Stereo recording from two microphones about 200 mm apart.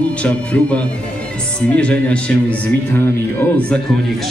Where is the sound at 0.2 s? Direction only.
5° left (ahead or behind).